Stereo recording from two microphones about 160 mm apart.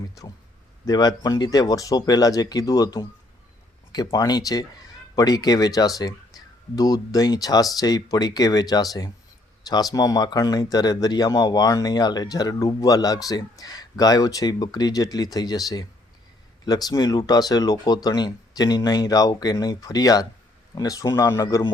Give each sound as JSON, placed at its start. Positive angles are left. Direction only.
{"t": 0.9, "sound": "speech", "side_deg": 25}